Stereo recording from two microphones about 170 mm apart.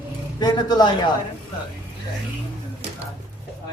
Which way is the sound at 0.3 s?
25° left (ahead or behind).